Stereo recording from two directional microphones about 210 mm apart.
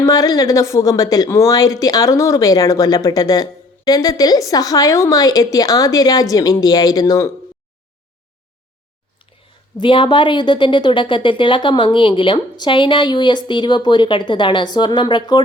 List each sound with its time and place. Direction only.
0.0 s a woman's voice: 15° left (ahead or behind)
9.8 s a woman's voice: 25° left (ahead or behind)